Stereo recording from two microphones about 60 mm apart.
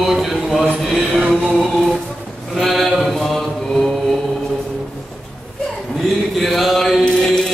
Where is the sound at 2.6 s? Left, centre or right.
Centre.